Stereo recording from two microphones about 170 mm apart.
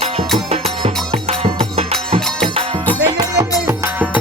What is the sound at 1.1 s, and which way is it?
Music, 35° right (ahead or behind).